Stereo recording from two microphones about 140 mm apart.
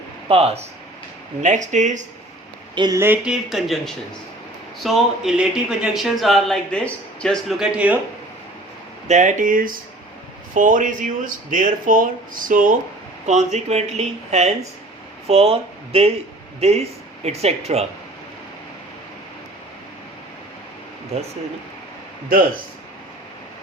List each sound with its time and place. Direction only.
0.3 s speech: 45° right (ahead or behind)
1.4 s speech: 60° right (ahead or behind)
2.7 s speech: 30° right (ahead or behind)
3.0 s speech: 15° right (ahead or behind)
3.5 s speech: centre (ahead or behind)
9.0 s speech: 60° right (ahead or behind); by 9.7 s 80° right
10.5 s speech: 70° right (ahead or behind)
13.2 s speech: 55° right (ahead or behind)